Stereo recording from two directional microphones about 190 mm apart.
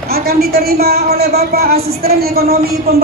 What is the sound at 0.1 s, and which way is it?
A woman's voice, 55° right (ahead or behind).